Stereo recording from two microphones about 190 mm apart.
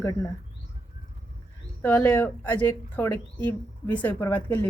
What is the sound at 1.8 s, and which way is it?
Speech, 10° left (ahead or behind).